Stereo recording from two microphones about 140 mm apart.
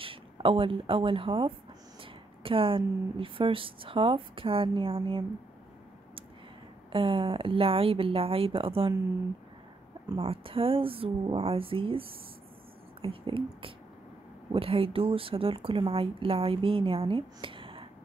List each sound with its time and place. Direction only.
0.0 s speech: 40° right (ahead or behind)
6.9 s speech: 40° right (ahead or behind)
10.2 s speech: 40° right (ahead or behind)